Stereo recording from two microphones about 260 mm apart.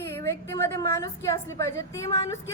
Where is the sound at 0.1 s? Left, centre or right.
Centre.